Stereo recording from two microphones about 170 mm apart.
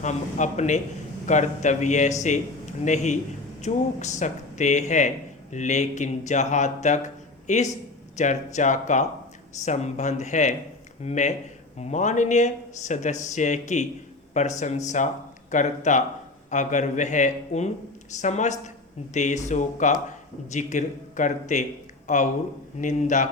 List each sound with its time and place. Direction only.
0.0 s speech: 45° left (ahead or behind)